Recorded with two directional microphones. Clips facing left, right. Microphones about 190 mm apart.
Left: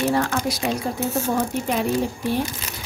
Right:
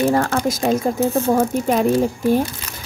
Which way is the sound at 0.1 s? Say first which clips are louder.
Right 4 dB; 45° right (ahead or behind).